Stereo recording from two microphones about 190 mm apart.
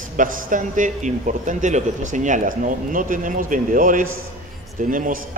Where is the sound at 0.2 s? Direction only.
45° right (ahead or behind).